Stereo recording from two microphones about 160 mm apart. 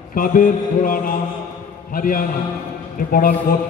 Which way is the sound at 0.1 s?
60° left (ahead or behind).